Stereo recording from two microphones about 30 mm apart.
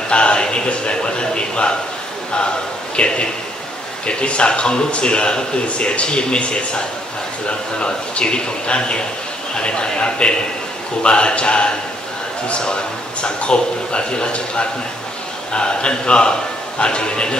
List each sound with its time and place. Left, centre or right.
0.1 s a sound: left
0.7 s a man's voice: left
3.0 s a man's voice: left